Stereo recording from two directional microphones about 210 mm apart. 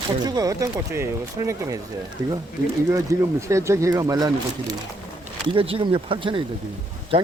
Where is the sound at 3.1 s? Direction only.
15° right (ahead or behind).